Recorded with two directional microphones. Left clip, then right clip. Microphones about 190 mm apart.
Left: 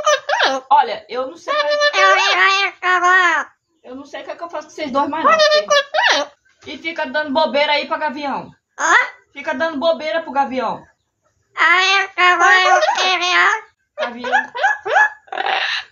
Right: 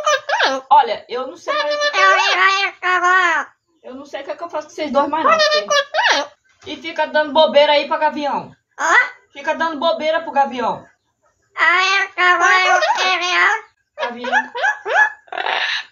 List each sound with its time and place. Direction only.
0.0 s chuckle: 20° left (ahead or behind)
0.7 s a man's voice: 10° right (ahead or behind)
1.5 s speech: 20° left (ahead or behind)
4.0 s a man's voice: 10° right (ahead or behind)
5.2 s a child's voice: 20° left (ahead or behind)
6.6 s a man's voice: 10° right (ahead or behind)
8.7 s a child's voice: 20° left (ahead or behind)
9.3 s a man's voice: 10° right (ahead or behind)
11.5 s child singing: 20° left (ahead or behind)